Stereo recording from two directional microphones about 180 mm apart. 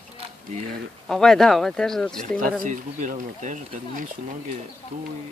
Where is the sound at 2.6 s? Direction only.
45° right (ahead or behind).